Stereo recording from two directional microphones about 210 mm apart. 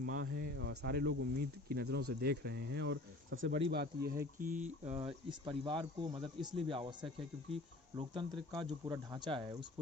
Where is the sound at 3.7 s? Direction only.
50° right (ahead or behind).